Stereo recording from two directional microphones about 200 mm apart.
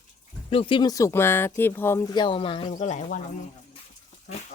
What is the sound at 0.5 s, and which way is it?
Speech, 25° left (ahead or behind).